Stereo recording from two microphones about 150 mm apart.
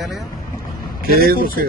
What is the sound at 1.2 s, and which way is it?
Speech, 85° right.